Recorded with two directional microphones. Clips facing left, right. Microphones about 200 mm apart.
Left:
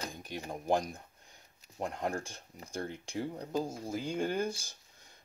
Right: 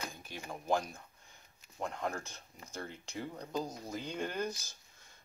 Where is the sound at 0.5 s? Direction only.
15° left (ahead or behind).